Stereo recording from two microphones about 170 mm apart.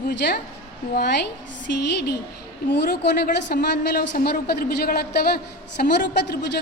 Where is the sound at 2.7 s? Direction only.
80° left.